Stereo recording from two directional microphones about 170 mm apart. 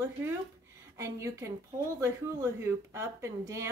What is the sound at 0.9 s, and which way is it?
Speech, 15° right (ahead or behind).